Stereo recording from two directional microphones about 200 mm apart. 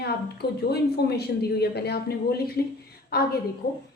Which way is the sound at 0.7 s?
55° left (ahead or behind).